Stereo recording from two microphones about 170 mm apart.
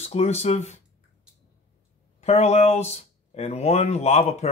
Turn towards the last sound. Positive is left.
turn(degrees=40)  # may be behind; listen again after turning